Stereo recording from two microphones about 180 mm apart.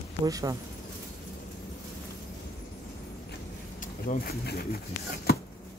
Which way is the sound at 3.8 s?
50° left (ahead or behind).